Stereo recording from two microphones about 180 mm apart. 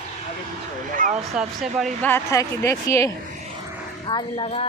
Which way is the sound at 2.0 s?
15° left (ahead or behind).